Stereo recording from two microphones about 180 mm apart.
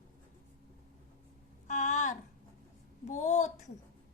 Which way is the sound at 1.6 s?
45° left (ahead or behind).